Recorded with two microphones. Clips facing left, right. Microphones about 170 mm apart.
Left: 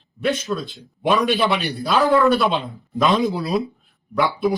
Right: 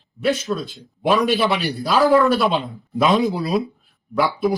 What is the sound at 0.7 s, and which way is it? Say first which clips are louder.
Speech: right 1 dB; centre (ahead or behind).